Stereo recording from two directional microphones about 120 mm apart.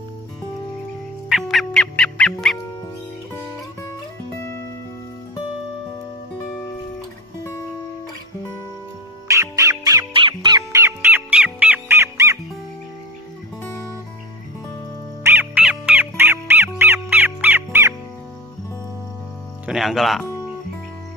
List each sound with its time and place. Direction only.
1.3 s music: centre (ahead or behind)
9.3 s music: 25° right (ahead or behind)
10.1 s music: 40° right (ahead or behind)
10.8 s music: 15° right (ahead or behind)
15.2 s music: 15° right (ahead or behind)
19.6 s music: centre (ahead or behind)